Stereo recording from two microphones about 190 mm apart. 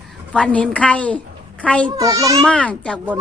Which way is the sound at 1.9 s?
20° right (ahead or behind).